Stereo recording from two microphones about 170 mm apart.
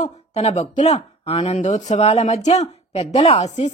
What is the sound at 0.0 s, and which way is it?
Speech, 40° left (ahead or behind).